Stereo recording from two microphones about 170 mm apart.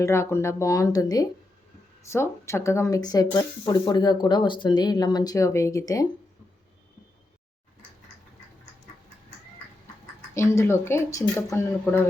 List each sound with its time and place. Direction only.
0.0 s speech: 15° left (ahead or behind)
10.3 s speech: 15° left (ahead or behind)